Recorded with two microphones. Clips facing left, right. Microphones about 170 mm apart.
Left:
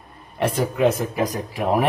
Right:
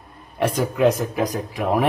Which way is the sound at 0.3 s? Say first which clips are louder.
Right 1 dB; centre (ahead or behind).